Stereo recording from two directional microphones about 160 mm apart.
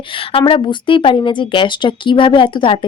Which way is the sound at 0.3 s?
35° left (ahead or behind).